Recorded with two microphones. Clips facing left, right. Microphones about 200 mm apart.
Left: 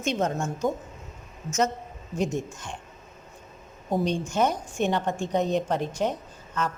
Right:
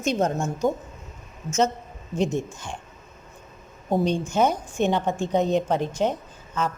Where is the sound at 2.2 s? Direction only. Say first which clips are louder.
Right 3 dB; 25° right (ahead or behind).